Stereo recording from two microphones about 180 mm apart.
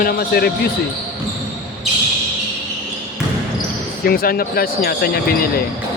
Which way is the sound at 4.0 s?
55° left (ahead or behind).